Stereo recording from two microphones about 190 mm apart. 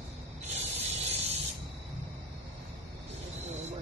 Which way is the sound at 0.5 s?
35° right (ahead or behind).